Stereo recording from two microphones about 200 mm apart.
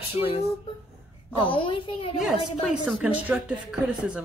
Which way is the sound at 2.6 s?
5° right (ahead or behind).